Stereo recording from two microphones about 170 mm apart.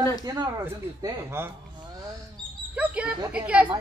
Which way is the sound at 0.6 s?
15° right (ahead or behind).